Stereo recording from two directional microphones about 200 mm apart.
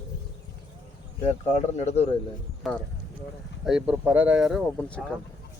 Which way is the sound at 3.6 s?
5° right (ahead or behind).